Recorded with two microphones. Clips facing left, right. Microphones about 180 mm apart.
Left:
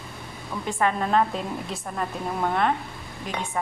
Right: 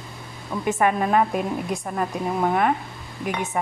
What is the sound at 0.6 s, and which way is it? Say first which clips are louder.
A woman's voice: right 4 dB; 10° right (ahead or behind).